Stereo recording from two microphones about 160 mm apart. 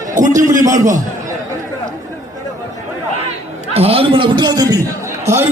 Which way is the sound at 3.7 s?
40° right (ahead or behind).